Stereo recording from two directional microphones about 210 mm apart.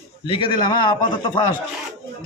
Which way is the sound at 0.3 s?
25° left (ahead or behind).